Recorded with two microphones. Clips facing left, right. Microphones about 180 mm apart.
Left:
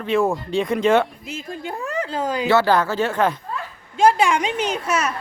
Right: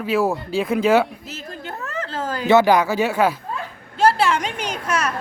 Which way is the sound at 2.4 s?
15° right (ahead or behind).